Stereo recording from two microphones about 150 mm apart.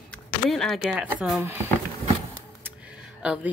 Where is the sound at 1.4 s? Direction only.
15° right (ahead or behind).